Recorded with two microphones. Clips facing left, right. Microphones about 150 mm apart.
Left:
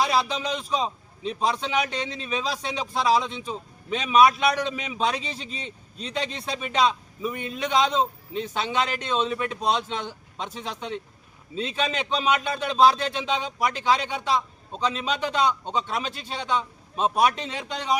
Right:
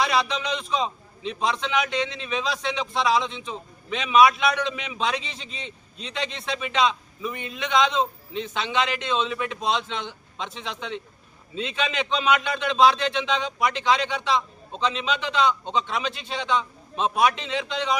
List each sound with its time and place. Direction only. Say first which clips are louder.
0.0 s a man's voice: even; 35° left (ahead or behind)